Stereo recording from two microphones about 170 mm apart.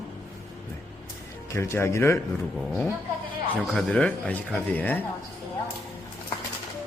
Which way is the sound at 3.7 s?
5° left (ahead or behind).